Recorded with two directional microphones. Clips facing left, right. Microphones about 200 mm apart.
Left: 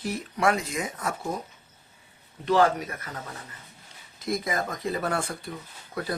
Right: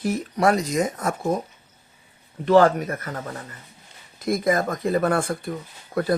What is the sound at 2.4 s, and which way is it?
Speech, 50° right (ahead or behind).